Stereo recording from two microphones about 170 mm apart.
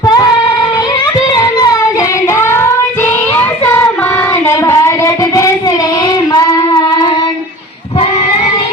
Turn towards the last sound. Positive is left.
turn(degrees=25)  # may be behind; listen again after turning